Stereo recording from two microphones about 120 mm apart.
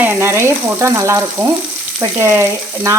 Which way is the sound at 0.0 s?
20° right (ahead or behind).